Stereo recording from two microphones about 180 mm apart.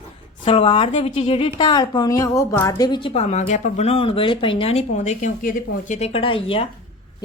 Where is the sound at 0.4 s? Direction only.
30° left (ahead or behind).